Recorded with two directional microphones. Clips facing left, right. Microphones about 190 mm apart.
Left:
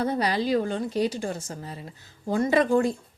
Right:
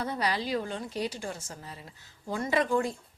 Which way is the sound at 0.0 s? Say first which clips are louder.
Left 6 dB; 40° left (ahead or behind).